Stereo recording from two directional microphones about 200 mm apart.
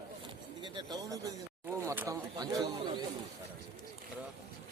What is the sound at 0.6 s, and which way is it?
Speech, 20° right (ahead or behind).